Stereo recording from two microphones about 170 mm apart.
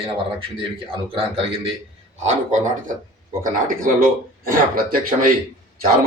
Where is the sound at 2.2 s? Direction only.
45° right (ahead or behind).